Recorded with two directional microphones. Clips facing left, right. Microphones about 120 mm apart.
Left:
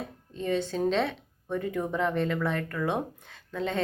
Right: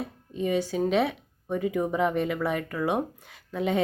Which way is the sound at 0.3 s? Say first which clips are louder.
Right 2 dB; 10° right (ahead or behind).